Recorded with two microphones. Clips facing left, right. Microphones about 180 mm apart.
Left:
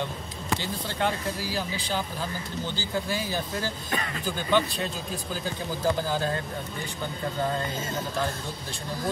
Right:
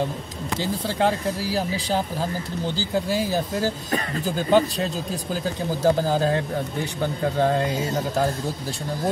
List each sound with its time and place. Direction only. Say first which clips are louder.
0.8 s speech: right 6 dB; 35° right (ahead or behind)
7.3 s speech: right 7 dB; 75° right (ahead or behind)